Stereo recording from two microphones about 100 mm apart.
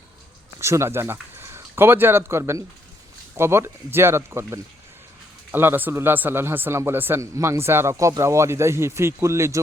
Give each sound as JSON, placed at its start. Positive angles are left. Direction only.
{"t": 0.6, "sound": "speech", "side_deg": -30}